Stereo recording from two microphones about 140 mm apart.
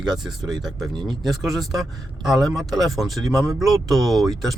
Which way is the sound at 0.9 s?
30° right (ahead or behind).